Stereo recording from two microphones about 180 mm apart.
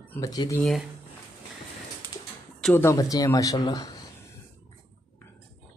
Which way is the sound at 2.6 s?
10° left (ahead or behind).